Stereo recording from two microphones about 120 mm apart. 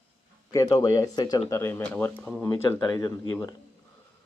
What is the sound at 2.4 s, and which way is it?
Speech, 25° left (ahead or behind).